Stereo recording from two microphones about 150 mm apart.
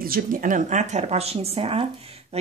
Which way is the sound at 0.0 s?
70° right (ahead or behind).